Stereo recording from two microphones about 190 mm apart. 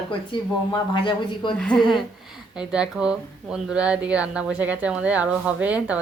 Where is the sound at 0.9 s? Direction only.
25° left (ahead or behind).